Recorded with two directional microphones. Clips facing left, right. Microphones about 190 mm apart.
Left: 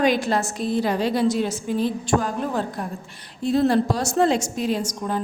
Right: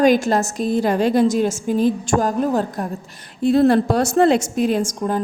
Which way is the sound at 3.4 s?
60° right (ahead or behind).